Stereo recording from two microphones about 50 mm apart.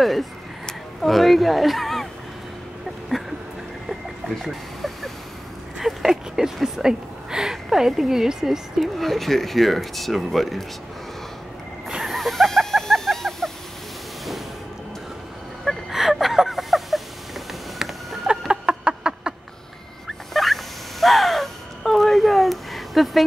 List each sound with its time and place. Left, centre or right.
0.0 s speech: centre
3.9 s vehicle: centre
5.8 s speech: centre
12.0 s bird: centre
15.9 s a sound: centre
18.5 s fowl: centre
20.1 s a sound: centre
21.0 s gasp: centre